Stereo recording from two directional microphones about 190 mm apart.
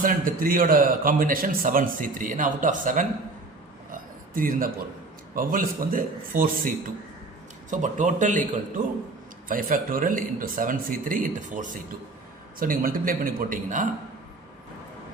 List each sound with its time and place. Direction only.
0.0 s a man's voice: 45° right (ahead or behind)
4.4 s a man's voice: 45° right (ahead or behind)
7.7 s a man's voice: 40° right (ahead or behind)